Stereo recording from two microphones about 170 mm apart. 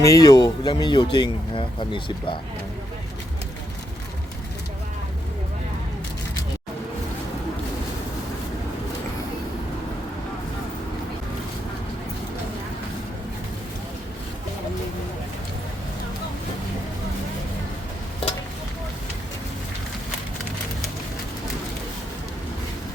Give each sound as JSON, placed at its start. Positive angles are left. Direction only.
{"t": 0.0, "sound": "speech", "side_deg": 20}